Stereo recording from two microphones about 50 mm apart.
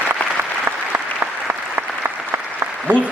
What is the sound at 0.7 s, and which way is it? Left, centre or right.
Applause, right.